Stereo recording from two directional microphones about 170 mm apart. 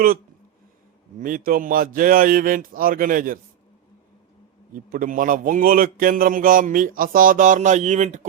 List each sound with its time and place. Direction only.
1.2 s a man's voice: 55° right (ahead or behind)
4.7 s a man's voice: 55° right (ahead or behind)